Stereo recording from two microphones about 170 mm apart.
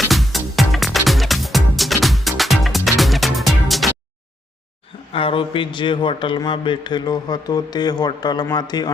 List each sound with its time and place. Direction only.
0.1 s music: centre (ahead or behind)
5.1 s a man's voice: 30° left (ahead or behind)